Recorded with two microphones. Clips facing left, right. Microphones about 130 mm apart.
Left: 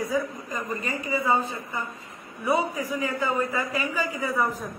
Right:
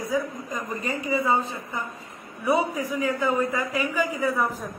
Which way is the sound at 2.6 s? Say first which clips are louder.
Right 2 dB; 15° right (ahead or behind).